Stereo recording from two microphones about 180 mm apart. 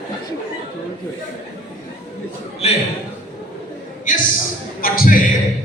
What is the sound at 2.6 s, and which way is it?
Speech, 35° left (ahead or behind).